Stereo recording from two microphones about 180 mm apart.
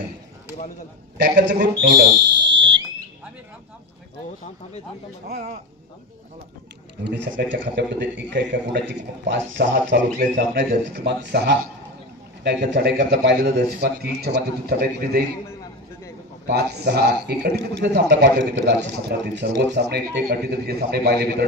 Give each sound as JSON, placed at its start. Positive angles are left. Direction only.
{"t": 1.1, "sound": "a man's voice", "side_deg": -65}
{"t": 2.5, "sound": "fire alarm", "side_deg": -90}
{"t": 7.1, "sound": "a man's voice", "side_deg": -70}
{"t": 10.2, "sound": "a man's voice", "side_deg": -50}
{"t": 16.4, "sound": "a man's voice", "side_deg": -60}